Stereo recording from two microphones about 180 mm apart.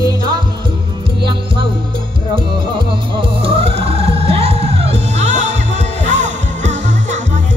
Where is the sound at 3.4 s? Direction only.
30° right (ahead or behind).